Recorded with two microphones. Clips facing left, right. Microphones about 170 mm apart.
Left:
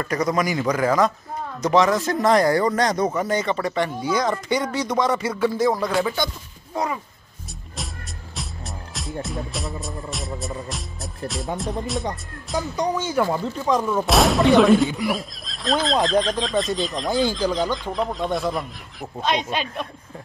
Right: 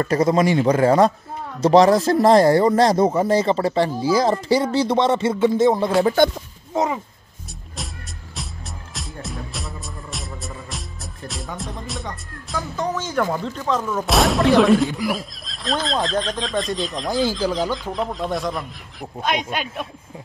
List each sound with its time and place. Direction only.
0.0 s speech: 30° right (ahead or behind)
6.0 s speech: 50° right (ahead or behind)
6.7 s speech: 20° right (ahead or behind)
8.4 s music: centre (ahead or behind)
11.5 s speech: centre (ahead or behind)
12.5 s speech: 15° left (ahead or behind)
14.0 s speech: centre (ahead or behind)